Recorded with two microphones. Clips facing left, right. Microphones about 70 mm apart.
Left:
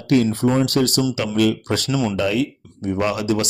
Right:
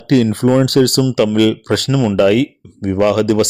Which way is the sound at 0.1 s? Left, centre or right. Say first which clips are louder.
Right 5 dB; right.